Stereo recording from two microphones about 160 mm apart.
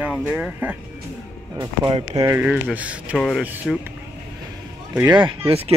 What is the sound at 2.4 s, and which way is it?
Speech, 10° right (ahead or behind).